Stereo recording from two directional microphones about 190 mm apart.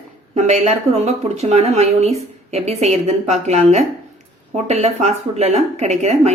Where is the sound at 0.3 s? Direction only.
35° right (ahead or behind).